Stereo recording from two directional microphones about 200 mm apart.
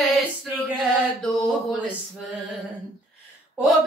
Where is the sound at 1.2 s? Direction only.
Centre (ahead or behind).